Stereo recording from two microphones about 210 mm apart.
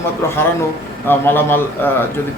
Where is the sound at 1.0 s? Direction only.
10° left (ahead or behind).